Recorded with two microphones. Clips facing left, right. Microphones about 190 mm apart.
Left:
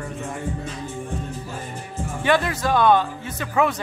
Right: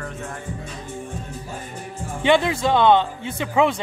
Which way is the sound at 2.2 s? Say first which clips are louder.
Right 3 dB; 20° right (ahead or behind).